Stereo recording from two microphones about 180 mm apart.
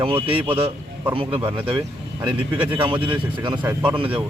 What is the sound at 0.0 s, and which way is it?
A man's voice, 30° right (ahead or behind).